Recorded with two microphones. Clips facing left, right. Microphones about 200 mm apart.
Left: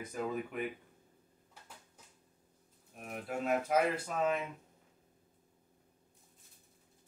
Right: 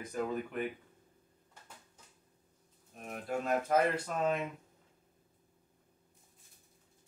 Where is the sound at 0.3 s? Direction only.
5° left (ahead or behind).